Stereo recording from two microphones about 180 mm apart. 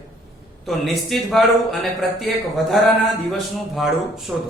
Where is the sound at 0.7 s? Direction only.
Centre (ahead or behind).